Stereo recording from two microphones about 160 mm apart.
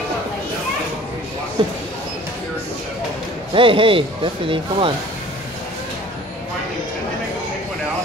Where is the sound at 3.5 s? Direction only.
35° right (ahead or behind).